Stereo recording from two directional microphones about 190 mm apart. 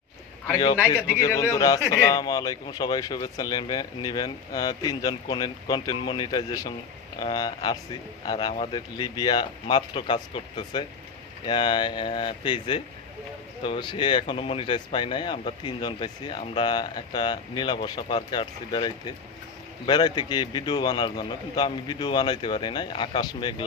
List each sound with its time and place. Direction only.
0.4 s a man's voice: 25° left (ahead or behind)